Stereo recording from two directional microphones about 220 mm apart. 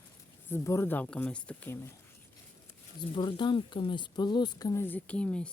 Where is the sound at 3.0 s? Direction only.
20° left (ahead or behind).